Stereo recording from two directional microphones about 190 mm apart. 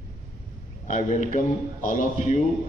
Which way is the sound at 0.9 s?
40° left (ahead or behind).